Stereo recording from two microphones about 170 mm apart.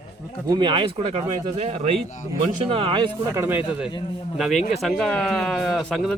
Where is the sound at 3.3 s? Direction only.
10° right (ahead or behind).